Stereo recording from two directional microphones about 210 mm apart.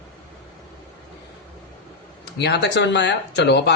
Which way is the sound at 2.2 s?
55° left (ahead or behind).